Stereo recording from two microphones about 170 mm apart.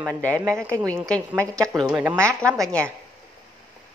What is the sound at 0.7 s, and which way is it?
Speech, 15° right (ahead or behind).